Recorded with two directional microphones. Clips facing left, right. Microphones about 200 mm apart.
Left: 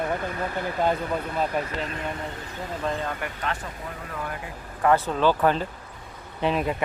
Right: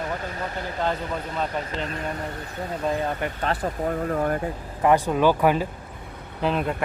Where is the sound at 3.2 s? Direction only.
30° right (ahead or behind); by 4.3 s 45° right (ahead or behind).